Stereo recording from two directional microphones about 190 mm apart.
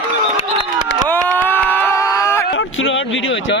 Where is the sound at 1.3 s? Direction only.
10° left (ahead or behind).